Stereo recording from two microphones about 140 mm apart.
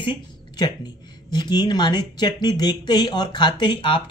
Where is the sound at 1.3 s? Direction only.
30° left (ahead or behind).